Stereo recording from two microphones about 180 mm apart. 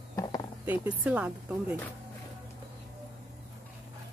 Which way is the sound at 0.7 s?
5° right (ahead or behind).